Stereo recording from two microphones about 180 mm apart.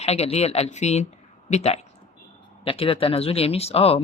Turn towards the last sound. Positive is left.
turn(degrees=35)  # may be behind; listen again after turning